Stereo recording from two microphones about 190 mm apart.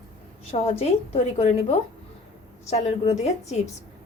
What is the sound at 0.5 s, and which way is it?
A woman's voice, 35° left (ahead or behind).